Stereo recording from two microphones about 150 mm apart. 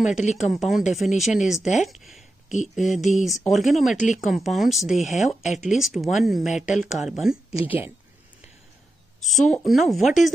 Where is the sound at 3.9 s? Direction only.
55° left (ahead or behind).